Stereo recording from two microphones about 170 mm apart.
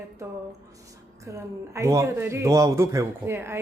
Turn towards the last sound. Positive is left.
turn(degrees=-15)  # may be behind; listen again after turning